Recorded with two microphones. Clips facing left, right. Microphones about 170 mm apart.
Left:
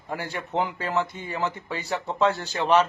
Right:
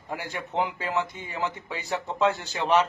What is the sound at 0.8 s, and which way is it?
A man's voice, 15° right (ahead or behind).